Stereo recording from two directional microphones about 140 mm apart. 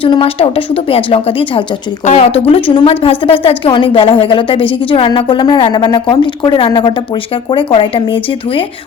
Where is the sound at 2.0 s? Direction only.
50° left (ahead or behind).